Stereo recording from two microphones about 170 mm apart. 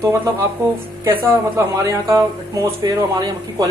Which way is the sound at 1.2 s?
15° right (ahead or behind).